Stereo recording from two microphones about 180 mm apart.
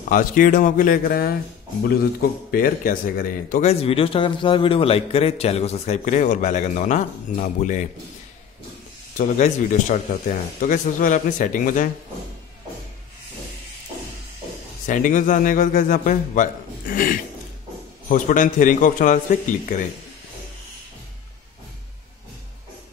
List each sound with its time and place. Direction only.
0.1 s speech: 50° left (ahead or behind)
2.5 s speech: 50° left (ahead or behind)
3.8 s a man's voice: 30° left (ahead or behind)
9.1 s speech: 45° left (ahead or behind)
14.9 s speech: 45° left (ahead or behind)